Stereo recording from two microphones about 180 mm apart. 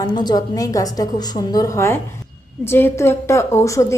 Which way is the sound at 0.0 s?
25° left (ahead or behind).